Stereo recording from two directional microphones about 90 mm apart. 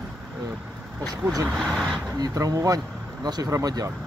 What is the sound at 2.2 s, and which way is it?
Speech, 40° right (ahead or behind).